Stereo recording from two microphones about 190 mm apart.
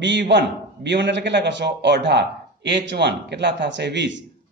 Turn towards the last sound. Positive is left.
turn(degrees=-70)  # may be behind; listen again after turning